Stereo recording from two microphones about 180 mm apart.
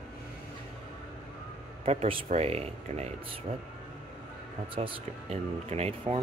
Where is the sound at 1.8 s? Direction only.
35° right (ahead or behind).